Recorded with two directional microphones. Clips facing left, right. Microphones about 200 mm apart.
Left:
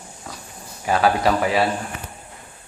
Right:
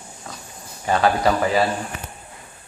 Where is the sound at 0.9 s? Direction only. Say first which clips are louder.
Even; 5° left (ahead or behind).